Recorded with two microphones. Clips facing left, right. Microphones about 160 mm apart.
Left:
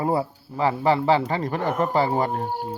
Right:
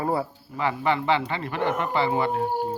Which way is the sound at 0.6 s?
35° left (ahead or behind).